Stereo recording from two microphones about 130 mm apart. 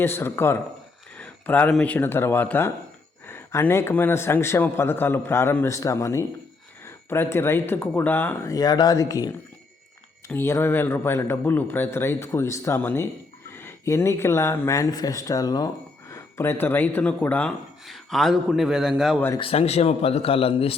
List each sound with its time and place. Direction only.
0.0 s speech: 15° left (ahead or behind)
1.1 s a sound: 10° left (ahead or behind)
1.7 s a man's voice: 10° left (ahead or behind)
8.5 s a man's voice: 30° left (ahead or behind); by 19.2 s centre (ahead or behind)
19.4 s a man's voice: 50° left (ahead or behind)